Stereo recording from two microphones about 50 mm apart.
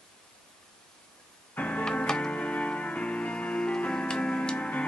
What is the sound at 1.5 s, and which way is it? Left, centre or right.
Music, left.